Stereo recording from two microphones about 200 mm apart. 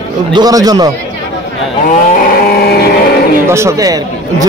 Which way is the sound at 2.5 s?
50° left (ahead or behind).